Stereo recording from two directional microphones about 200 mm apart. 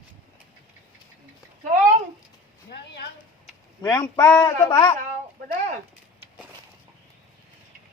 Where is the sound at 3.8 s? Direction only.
20° left (ahead or behind).